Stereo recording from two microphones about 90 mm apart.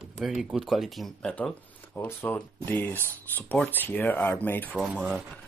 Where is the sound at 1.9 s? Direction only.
25° left (ahead or behind).